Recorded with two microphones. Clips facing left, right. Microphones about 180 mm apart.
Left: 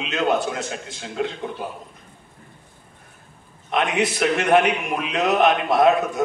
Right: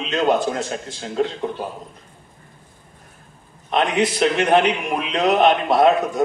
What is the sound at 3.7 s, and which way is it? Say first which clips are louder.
A man's voice: right 2 dB; 35° right (ahead or behind).